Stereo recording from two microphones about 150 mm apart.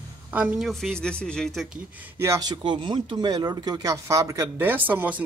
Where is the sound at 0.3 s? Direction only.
5° right (ahead or behind).